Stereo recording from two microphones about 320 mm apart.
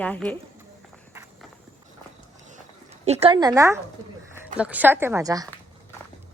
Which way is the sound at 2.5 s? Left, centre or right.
Right.